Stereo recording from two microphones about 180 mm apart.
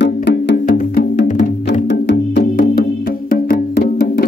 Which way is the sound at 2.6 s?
55° left (ahead or behind).